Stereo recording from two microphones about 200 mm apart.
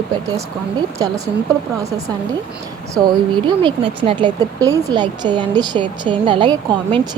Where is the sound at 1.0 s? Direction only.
20° right (ahead or behind).